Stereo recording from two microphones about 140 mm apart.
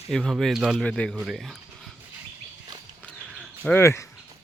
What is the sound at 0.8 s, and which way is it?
Speech, 5° left (ahead or behind).